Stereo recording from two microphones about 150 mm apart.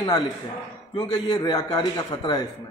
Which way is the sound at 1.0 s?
25° left (ahead or behind).